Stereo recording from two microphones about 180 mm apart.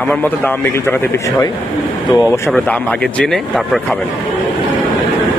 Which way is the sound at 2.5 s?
5° left (ahead or behind).